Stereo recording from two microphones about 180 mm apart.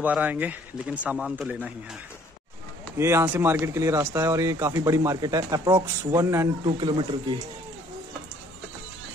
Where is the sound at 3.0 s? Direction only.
15° right (ahead or behind).